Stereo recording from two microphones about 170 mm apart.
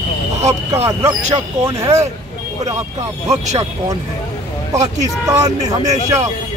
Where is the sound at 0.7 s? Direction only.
15° right (ahead or behind).